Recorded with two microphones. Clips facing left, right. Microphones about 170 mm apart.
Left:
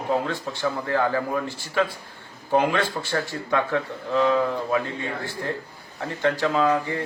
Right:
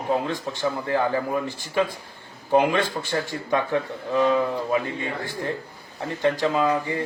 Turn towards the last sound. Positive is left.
turn(degrees=-15)  # may be behind; listen again after turning